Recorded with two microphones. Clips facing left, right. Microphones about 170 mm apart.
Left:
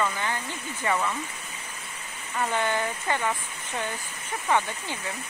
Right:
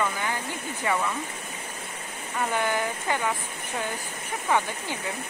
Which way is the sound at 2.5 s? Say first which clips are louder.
Right 1 dB; 15° right (ahead or behind).